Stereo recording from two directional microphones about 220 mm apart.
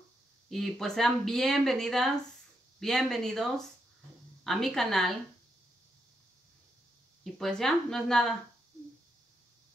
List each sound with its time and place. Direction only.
0.5 s speech: centre (ahead or behind)
7.3 s speech: centre (ahead or behind)